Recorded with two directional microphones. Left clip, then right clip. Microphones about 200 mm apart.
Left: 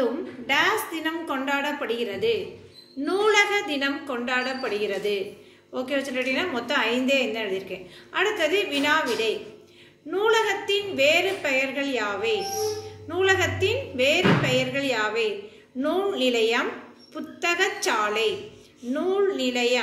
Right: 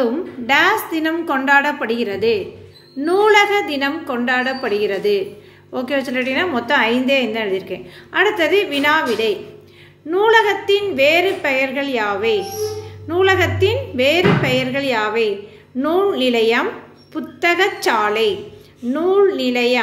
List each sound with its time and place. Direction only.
0.0 s a woman's voice: 45° right (ahead or behind)